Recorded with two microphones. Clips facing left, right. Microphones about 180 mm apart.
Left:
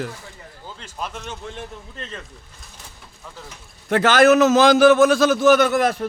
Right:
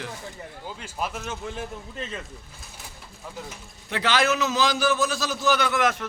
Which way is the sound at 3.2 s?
10° right (ahead or behind).